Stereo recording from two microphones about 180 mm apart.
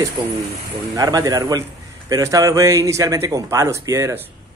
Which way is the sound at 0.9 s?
20° right (ahead or behind).